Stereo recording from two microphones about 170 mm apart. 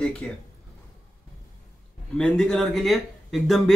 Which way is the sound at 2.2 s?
5° left (ahead or behind).